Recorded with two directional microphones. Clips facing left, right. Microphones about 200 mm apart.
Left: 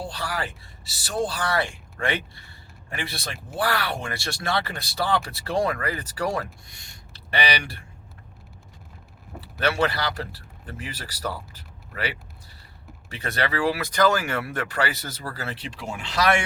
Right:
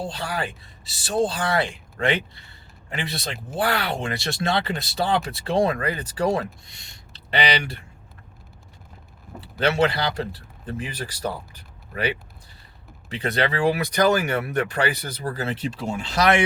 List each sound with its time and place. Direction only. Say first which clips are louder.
0.0 s speech: right 2 dB; 20° right (ahead or behind)
9.6 s speech: right 3 dB; 20° right (ahead or behind)
13.1 s speech: right 4 dB; 20° right (ahead or behind)
15.6 s speech: right 6 dB; 40° right (ahead or behind)